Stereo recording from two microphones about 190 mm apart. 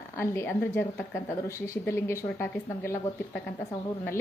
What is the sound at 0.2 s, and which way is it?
A woman's voice, 10° left (ahead or behind).